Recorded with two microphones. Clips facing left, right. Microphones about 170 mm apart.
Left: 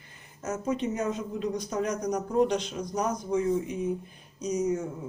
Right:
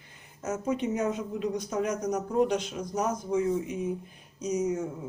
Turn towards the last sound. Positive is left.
turn(degrees=-5)  # may be behind; listen again after turning